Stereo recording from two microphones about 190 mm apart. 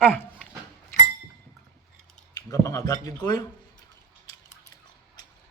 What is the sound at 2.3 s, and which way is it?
Speech, 15° left (ahead or behind).